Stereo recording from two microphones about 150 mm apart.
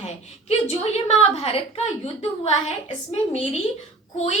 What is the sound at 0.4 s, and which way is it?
A woman's voice, 45° left (ahead or behind).